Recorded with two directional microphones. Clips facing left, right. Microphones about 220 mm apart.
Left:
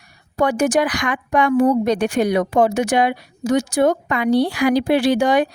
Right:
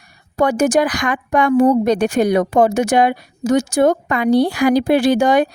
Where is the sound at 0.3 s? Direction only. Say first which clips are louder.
Right 2 dB; 45° right (ahead or behind).